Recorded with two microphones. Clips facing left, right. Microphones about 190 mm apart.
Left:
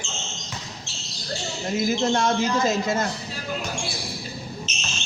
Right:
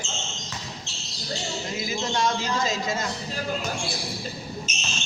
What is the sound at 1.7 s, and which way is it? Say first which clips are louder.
A woman's voice: left 7 dB; 50° left (ahead or behind).